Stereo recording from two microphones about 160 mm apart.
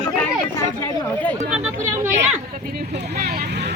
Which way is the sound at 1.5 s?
10° right (ahead or behind).